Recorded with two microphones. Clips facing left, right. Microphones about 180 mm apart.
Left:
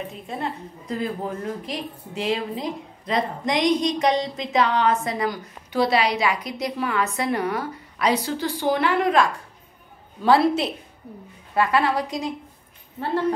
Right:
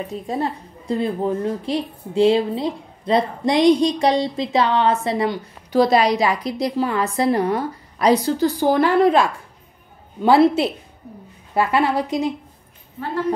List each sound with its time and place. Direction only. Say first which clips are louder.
0.1 s a woman's voice: right 6 dB; 35° right (ahead or behind)
5.7 s a woman's voice: right 5 dB; 40° right (ahead or behind)
10.2 s a woman's voice: right 4 dB; 25° right (ahead or behind)